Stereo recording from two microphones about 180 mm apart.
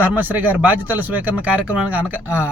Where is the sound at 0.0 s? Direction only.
10° right (ahead or behind).